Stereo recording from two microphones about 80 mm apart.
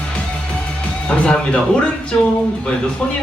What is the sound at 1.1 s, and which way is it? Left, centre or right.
Speech, centre.